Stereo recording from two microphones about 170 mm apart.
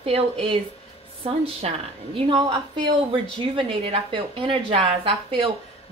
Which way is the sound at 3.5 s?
30° right (ahead or behind).